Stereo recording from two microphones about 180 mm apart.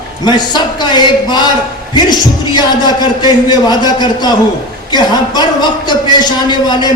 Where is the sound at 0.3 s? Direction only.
25° left (ahead or behind).